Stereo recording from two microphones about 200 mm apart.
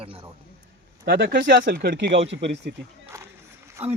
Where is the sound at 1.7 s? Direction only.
55° right (ahead or behind).